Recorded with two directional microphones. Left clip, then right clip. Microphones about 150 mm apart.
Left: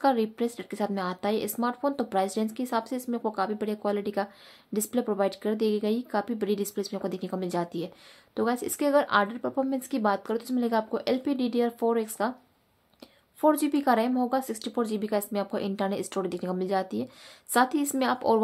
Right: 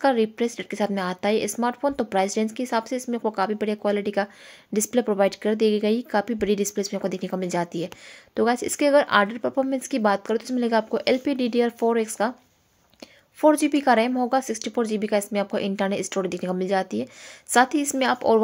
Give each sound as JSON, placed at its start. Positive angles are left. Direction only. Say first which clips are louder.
{"t": 0.0, "sound": "speech", "louder": "right 4 dB", "side_deg": -15}
{"t": 13.4, "sound": "speech", "louder": "right 5 dB", "side_deg": -20}